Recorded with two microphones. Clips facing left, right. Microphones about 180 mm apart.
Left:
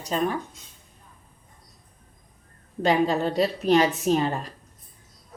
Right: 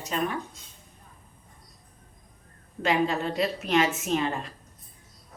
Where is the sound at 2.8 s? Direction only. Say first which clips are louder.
Left 4 dB; 35° left (ahead or behind).